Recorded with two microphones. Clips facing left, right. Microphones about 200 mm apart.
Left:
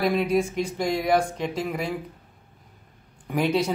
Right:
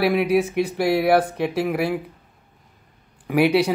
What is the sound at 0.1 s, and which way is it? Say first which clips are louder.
Speech: right 4 dB; 65° right (ahead or behind).